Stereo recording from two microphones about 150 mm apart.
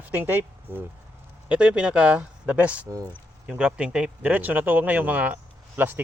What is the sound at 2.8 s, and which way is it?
Speech, 20° right (ahead or behind).